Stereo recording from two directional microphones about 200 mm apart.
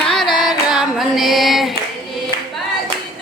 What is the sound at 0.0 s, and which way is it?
Female singing, centre (ahead or behind).